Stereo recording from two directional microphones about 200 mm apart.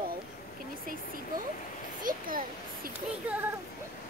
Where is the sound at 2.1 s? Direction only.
45° right (ahead or behind).